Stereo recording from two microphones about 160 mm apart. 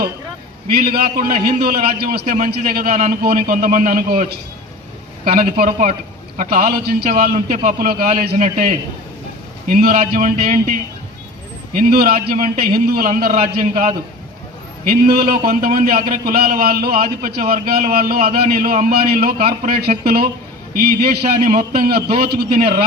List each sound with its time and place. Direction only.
0.8 s a man's voice: 70° right (ahead or behind)
11.8 s a man's voice: 70° right (ahead or behind)
14.8 s a man's voice: 70° right (ahead or behind)